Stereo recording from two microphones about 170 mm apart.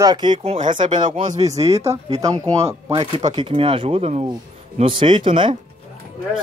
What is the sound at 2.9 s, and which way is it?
Speech, 35° right (ahead or behind).